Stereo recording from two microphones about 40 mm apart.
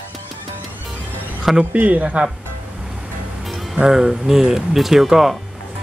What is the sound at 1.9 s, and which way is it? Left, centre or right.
Speech, right.